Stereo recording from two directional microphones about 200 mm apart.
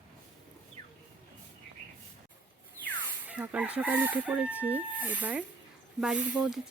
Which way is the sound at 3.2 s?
5° right (ahead or behind).